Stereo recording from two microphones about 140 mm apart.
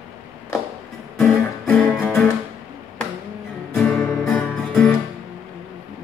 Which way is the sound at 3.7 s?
Centre (ahead or behind).